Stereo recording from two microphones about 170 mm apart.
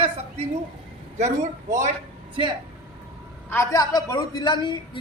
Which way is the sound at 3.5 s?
15° left (ahead or behind).